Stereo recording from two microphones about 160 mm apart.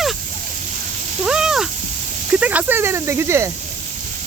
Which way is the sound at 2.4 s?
10° right (ahead or behind).